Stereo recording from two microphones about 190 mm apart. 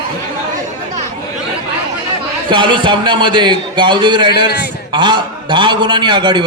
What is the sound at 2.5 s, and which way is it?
A man's voice, 25° right (ahead or behind).